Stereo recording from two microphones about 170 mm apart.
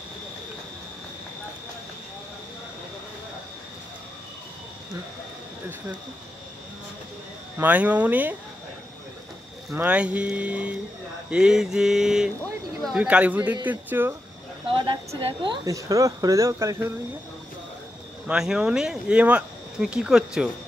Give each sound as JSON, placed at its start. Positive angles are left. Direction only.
{"t": 7.5, "sound": "music", "side_deg": -10}
{"t": 9.8, "sound": "music", "side_deg": -5}
{"t": 11.2, "sound": "speech", "side_deg": -5}
{"t": 12.8, "sound": "music", "side_deg": -5}
{"t": 14.7, "sound": "a woman's voice", "side_deg": -30}
{"t": 18.2, "sound": "speech", "side_deg": -5}